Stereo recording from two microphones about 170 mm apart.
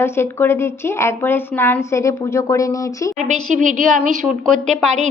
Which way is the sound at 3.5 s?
50° right (ahead or behind).